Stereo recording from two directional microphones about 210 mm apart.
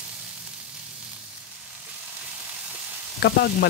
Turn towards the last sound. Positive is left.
turn(degrees=50)  # may be behind; listen again after turning